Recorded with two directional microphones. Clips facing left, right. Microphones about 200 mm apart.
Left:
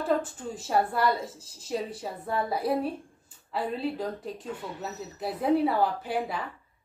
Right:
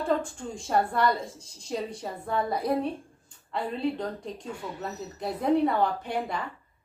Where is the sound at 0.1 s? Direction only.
5° left (ahead or behind).